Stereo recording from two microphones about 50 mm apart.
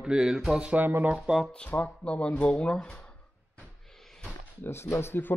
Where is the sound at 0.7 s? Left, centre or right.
Right.